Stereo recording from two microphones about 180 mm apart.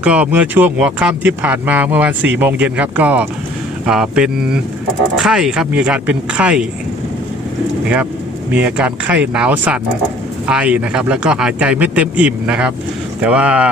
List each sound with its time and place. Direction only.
0.0 s speech: 5° right (ahead or behind)
8.5 s speech: 5° right (ahead or behind)